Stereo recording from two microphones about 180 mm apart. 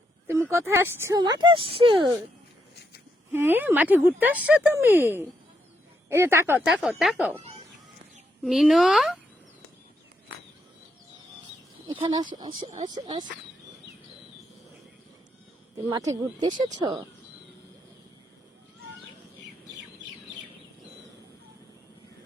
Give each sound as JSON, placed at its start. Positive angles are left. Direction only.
{"t": 0.3, "sound": "speech", "side_deg": -15}
{"t": 3.3, "sound": "speech", "side_deg": -10}
{"t": 6.7, "sound": "speech", "side_deg": 0}
{"t": 8.4, "sound": "speech", "side_deg": 0}
{"t": 11.9, "sound": "speech", "side_deg": -25}
{"t": 15.9, "sound": "speech", "side_deg": -20}